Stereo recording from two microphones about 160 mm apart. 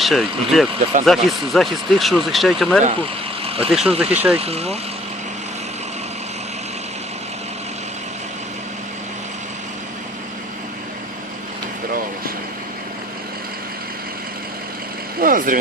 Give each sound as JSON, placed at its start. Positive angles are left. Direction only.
{"t": 0.0, "sound": "speech", "side_deg": 0}
{"t": 4.4, "sound": "speech", "side_deg": -40}
{"t": 15.2, "sound": "vehicle", "side_deg": -60}